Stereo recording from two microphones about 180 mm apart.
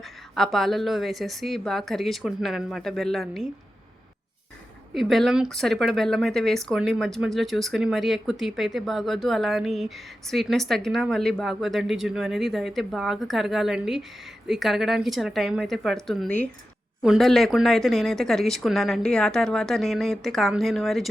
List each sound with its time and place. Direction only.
0.3 s speech: centre (ahead or behind)
4.9 s speech: centre (ahead or behind)